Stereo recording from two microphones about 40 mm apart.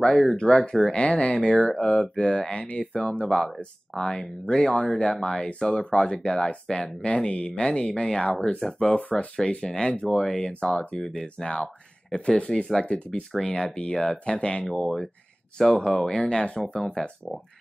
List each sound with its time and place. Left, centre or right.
0.0 s speech: left
8.5 s speech: centre
12.5 s speech: centre
12.8 s speech: left
14.7 s speech: centre
15.5 s speech: centre
16.2 s speech: left